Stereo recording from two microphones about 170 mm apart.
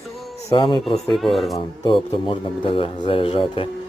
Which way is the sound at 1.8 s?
30° left (ahead or behind).